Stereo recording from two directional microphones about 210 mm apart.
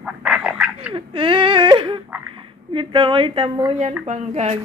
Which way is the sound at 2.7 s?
25° right (ahead or behind).